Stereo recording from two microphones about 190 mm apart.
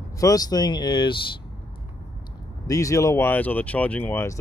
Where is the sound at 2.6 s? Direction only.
15° left (ahead or behind).